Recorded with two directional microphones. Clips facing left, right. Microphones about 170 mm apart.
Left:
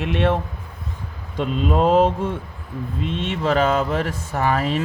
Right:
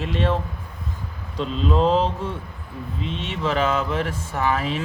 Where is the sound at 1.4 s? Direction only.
50° left (ahead or behind).